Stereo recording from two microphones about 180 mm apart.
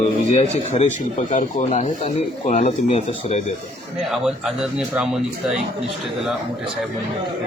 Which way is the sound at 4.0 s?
Centre (ahead or behind).